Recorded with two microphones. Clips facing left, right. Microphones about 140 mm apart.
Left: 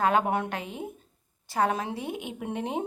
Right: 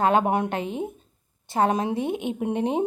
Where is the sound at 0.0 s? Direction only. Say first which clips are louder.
Right 4 dB; 25° right (ahead or behind).